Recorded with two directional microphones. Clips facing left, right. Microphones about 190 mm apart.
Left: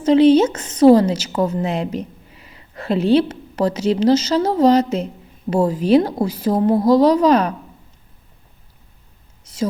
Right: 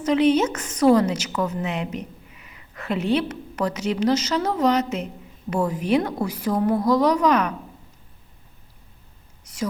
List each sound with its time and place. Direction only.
0.0 s a woman's voice: 30° left (ahead or behind)
9.4 s whispering: 30° left (ahead or behind)